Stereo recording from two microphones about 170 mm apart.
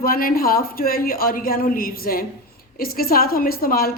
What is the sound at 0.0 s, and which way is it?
A woman's voice, 60° left (ahead or behind).